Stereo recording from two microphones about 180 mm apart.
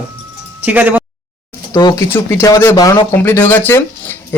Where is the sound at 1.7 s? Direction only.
20° left (ahead or behind).